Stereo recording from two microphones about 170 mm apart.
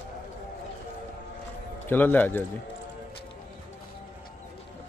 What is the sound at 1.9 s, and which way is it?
Speech, 10° left (ahead or behind).